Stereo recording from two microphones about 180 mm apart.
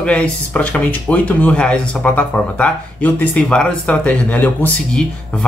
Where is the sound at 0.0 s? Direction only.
5° left (ahead or behind).